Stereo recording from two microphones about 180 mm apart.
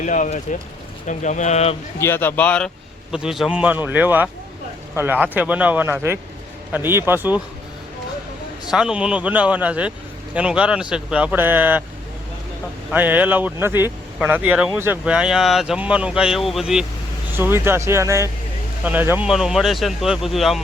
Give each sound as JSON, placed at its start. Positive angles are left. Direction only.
{"t": 0.0, "sound": "speech", "side_deg": 45}
{"t": 2.0, "sound": "a man's voice", "side_deg": 15}
{"t": 8.7, "sound": "speech", "side_deg": -5}
{"t": 12.9, "sound": "speech", "side_deg": -10}
{"t": 17.3, "sound": "speech", "side_deg": -10}